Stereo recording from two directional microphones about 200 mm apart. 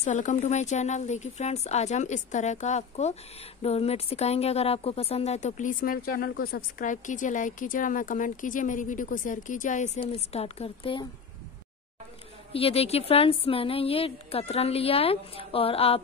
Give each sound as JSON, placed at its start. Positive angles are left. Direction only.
{"t": 0.0, "sound": "speech", "side_deg": 35}
{"t": 12.5, "sound": "a woman's voice", "side_deg": 30}